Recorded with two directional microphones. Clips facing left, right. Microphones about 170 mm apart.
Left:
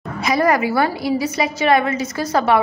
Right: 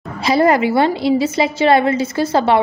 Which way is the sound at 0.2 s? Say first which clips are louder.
Right 3 dB; 30° right (ahead or behind).